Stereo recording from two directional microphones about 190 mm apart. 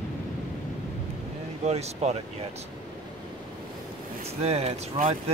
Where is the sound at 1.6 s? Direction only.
35° right (ahead or behind).